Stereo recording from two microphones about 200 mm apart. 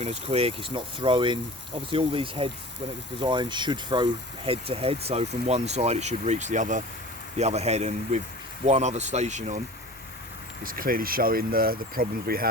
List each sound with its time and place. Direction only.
0.0 s speech: 30° right (ahead or behind)
10.6 s speech: 45° right (ahead or behind)